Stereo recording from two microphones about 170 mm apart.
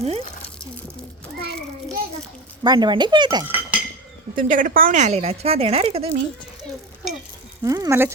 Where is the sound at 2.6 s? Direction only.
25° right (ahead or behind).